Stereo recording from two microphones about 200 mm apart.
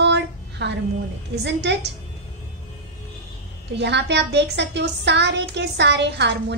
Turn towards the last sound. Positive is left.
turn(degrees=-60)  # may be behind; listen again after turning